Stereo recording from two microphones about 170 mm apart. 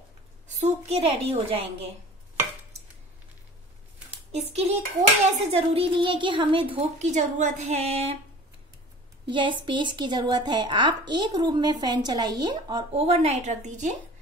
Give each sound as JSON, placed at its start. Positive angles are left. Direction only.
{"t": 0.6, "sound": "a woman's voice", "side_deg": -40}
{"t": 4.1, "sound": "a child's voice", "side_deg": -40}
{"t": 9.2, "sound": "a woman's voice", "side_deg": -30}